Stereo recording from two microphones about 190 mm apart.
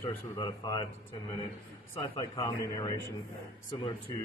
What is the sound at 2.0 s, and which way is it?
Speech, 25° left (ahead or behind).